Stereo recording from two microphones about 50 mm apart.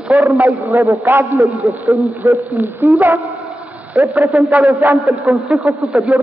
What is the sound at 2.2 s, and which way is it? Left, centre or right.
Speech, right.